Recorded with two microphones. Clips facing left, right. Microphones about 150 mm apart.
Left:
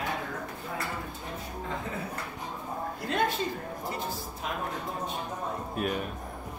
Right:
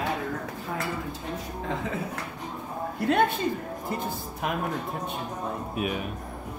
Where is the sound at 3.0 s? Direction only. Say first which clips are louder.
Right 7 dB; 60° right (ahead or behind).